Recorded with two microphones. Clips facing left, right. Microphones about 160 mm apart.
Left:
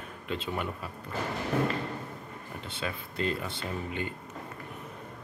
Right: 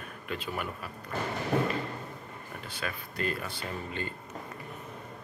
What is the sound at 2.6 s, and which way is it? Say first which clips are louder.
Speech: left 2 dB; 25° left (ahead or behind).